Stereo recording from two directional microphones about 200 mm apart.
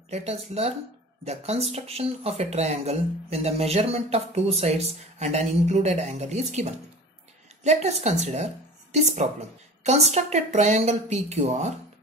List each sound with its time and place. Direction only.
0.1 s speech: 30° right (ahead or behind)